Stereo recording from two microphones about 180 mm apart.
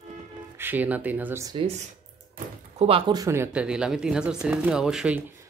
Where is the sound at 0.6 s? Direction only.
10° right (ahead or behind).